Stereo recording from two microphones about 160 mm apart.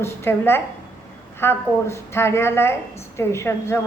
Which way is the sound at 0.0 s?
15° left (ahead or behind).